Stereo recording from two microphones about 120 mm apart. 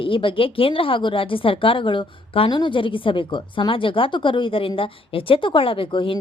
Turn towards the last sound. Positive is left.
turn(degrees=45)  # may be behind; listen again after turning